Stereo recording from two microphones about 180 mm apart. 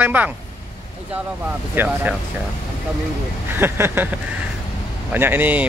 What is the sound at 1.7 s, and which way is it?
Speech, 10° right (ahead or behind).